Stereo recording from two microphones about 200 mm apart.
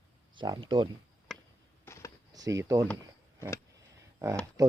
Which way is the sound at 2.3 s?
15° right (ahead or behind).